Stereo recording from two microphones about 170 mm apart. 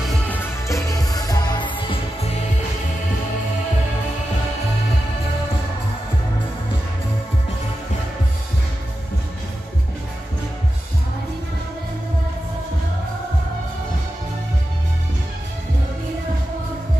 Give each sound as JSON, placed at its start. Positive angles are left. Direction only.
{"t": 0.3, "sound": "music", "side_deg": 20}